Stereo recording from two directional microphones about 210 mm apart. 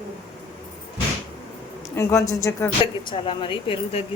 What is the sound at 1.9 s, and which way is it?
Speech, 15° left (ahead or behind).